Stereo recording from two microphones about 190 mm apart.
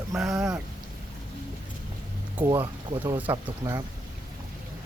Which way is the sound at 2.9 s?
25° right (ahead or behind).